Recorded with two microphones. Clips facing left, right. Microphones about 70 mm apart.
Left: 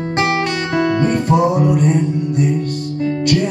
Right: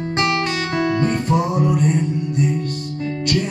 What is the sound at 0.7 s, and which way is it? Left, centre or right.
Guitar, centre.